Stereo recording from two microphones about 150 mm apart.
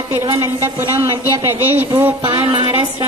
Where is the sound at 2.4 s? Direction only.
35° right (ahead or behind).